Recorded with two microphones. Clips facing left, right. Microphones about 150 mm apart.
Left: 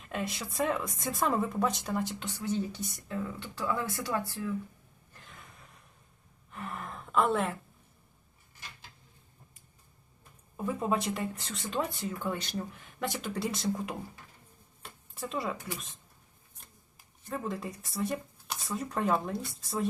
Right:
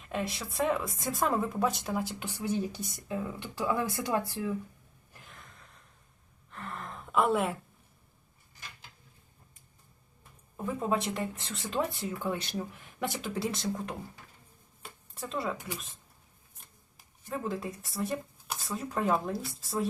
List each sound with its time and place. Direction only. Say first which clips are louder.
0.0 s speech: right 1 dB; centre (ahead or behind); by 4.5 s 20° right (ahead or behind)
6.5 s a sound: left 1 dB; 5° left (ahead or behind); by 7.5 s 10° right (ahead or behind)
10.6 s speech: even; centre (ahead or behind)
14.8 s shuffling cards: left 1 dB; centre (ahead or behind)
17.2 s speech: right 1 dB; centre (ahead or behind)